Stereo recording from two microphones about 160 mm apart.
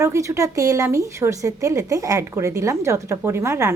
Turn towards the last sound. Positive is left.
turn(degrees=-15)  # may be behind; listen again after turning